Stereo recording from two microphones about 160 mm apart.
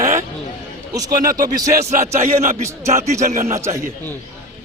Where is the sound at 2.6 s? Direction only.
20° right (ahead or behind).